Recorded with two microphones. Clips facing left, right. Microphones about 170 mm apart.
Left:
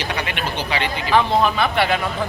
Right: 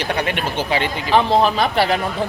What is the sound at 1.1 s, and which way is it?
Speech, 30° right (ahead or behind).